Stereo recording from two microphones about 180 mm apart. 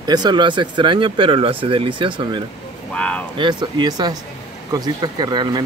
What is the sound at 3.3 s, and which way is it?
Speech, 25° right (ahead or behind).